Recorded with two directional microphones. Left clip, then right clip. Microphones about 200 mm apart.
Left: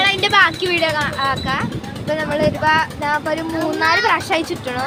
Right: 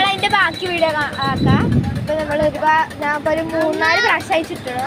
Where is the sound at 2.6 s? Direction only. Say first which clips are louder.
Right 1 dB; 10° left (ahead or behind).